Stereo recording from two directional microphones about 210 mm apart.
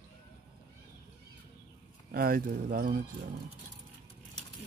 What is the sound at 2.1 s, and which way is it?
Speech, 45° right (ahead or behind).